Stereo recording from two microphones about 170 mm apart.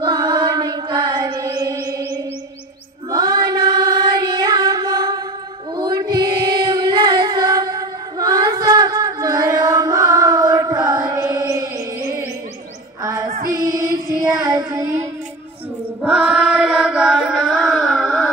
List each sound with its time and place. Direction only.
0.0 s mantra: 25° right (ahead or behind)
3.1 s female singing: 25° right (ahead or behind)
5.8 s child singing: 25° right (ahead or behind)
13.0 s female singing: 20° right (ahead or behind)
13.5 s child singing: 20° right (ahead or behind)
16.0 s chant: 5° right (ahead or behind)